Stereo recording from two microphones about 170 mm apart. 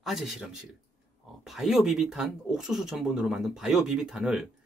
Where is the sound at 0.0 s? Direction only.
Centre (ahead or behind).